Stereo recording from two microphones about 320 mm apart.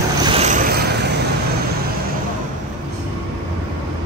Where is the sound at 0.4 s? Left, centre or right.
Right.